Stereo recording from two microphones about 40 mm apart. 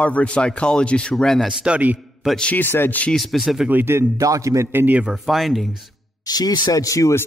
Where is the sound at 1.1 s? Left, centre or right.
Centre.